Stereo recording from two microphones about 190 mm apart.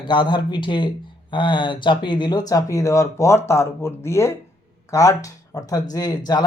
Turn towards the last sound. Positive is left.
turn(degrees=20)  # may be behind; listen again after turning